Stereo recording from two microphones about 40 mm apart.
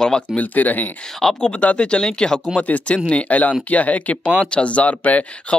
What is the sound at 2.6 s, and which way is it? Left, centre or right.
Speech, left.